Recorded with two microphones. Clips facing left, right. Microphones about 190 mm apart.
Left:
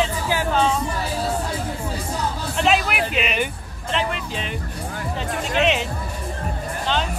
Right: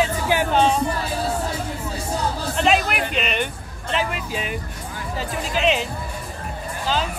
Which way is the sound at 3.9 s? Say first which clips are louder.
Even; 5° right (ahead or behind).